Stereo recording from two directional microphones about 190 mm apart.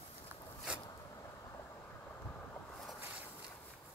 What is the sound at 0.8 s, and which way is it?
Vehicle, 20° left (ahead or behind).